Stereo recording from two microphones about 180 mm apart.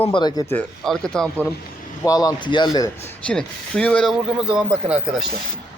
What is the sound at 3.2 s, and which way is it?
Speech, 5° left (ahead or behind).